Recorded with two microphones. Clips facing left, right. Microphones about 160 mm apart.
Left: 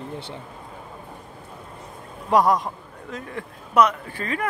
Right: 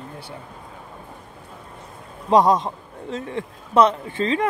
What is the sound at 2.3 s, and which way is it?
A man's voice, 25° right (ahead or behind).